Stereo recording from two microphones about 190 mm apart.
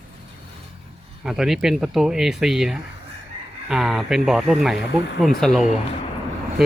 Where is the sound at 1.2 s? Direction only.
Centre (ahead or behind).